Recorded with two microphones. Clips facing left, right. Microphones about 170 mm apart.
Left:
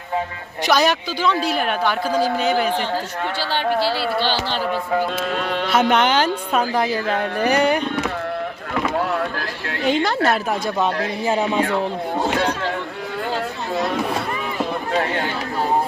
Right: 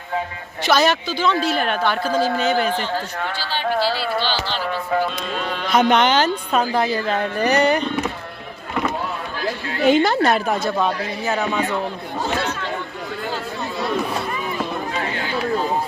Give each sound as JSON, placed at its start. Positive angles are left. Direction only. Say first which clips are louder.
{"t": 0.7, "sound": "a woman's voice", "louder": "right 1 dB", "side_deg": 10}
{"t": 5.7, "sound": "a woman's voice", "louder": "right 2 dB", "side_deg": 5}
{"t": 9.9, "sound": "speech", "louder": "right 2 dB", "side_deg": -5}
{"t": 11.3, "sound": "speech", "louder": "left 2 dB", "side_deg": 30}